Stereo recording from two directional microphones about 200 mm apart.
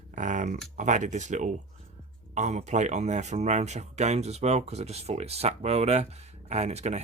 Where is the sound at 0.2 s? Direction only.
40° right (ahead or behind).